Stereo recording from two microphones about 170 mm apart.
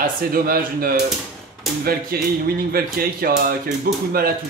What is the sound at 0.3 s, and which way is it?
A man's voice, 60° right (ahead or behind).